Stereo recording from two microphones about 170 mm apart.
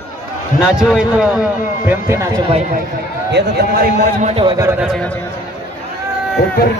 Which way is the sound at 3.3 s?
80° right.